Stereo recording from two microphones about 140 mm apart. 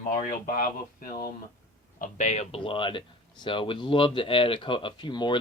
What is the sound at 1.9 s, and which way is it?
Speech, 65° left (ahead or behind).